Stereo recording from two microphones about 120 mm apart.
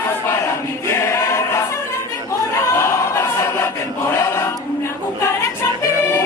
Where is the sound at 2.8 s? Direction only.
20° left (ahead or behind).